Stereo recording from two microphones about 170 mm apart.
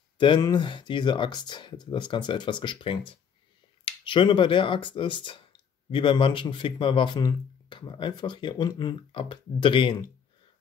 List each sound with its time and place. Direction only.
0.2 s speech: 25° left (ahead or behind)